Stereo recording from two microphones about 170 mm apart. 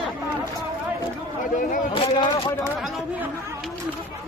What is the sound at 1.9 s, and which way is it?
Speech, 35° left (ahead or behind).